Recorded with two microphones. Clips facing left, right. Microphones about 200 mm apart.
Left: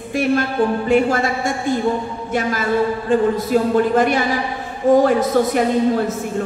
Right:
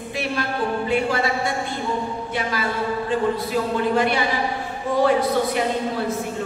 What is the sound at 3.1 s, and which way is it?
Speech, 45° left (ahead or behind).